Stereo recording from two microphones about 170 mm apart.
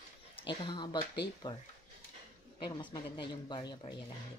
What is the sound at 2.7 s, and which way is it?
Speech, 25° left (ahead or behind).